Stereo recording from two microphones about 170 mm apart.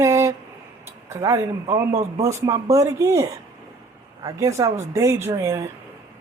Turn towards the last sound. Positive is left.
turn(degrees=-15)  # may be behind; listen again after turning